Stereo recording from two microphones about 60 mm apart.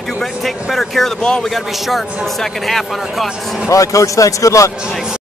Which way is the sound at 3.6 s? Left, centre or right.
Left.